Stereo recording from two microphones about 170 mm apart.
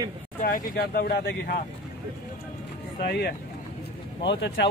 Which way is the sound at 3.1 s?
75° left (ahead or behind).